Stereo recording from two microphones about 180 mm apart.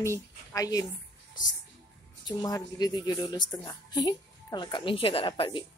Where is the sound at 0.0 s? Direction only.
15° left (ahead or behind).